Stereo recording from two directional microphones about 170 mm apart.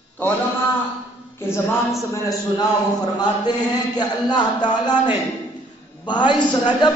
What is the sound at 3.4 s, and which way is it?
A man's voice, 25° left (ahead or behind).